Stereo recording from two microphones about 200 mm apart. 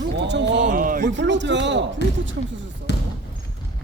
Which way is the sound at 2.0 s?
60° left (ahead or behind).